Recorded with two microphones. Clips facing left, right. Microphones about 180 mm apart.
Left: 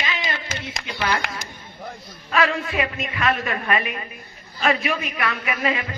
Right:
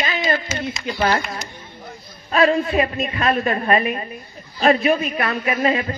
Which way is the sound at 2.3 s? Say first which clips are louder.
Right 6 dB; 35° right (ahead or behind).